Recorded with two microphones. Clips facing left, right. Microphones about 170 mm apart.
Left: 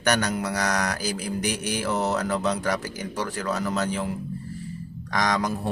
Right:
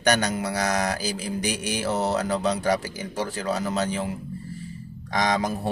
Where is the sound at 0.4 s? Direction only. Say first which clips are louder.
Right 1 dB; 30° right (ahead or behind).